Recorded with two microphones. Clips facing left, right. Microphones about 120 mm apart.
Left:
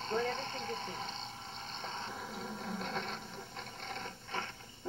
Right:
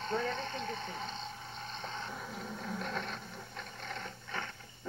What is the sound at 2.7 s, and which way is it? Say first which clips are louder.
Speech: right 1 dB; 50° right (ahead or behind).